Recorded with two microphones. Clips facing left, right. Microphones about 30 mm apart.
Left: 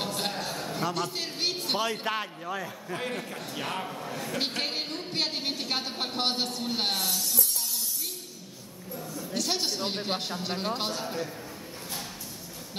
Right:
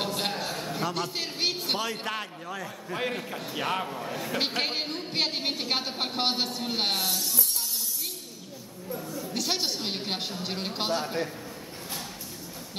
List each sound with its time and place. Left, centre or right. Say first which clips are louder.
0.0 s a sound: right 2 dB; centre
1.8 s a man's voice: left 2 dB; centre
2.9 s a man's voice: right 3 dB; centre
9.1 s chatter: even; centre
10.4 s a man's voice: left 1 dB; centre